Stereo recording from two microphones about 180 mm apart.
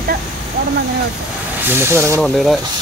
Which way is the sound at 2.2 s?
Centre (ahead or behind).